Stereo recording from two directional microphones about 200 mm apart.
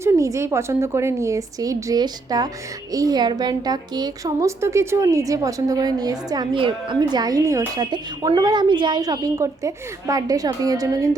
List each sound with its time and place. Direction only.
0.0 s a woman's voice: 15° right (ahead or behind)